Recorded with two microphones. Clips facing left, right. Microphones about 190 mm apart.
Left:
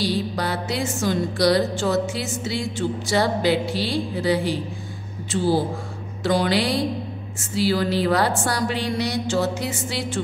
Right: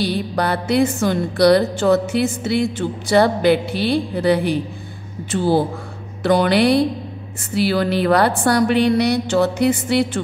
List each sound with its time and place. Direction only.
0.0 s music: 60° right (ahead or behind)